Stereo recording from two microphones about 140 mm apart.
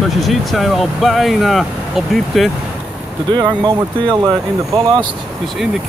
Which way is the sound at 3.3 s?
30° right (ahead or behind).